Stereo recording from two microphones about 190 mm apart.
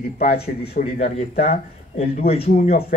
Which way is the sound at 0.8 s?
45° left (ahead or behind).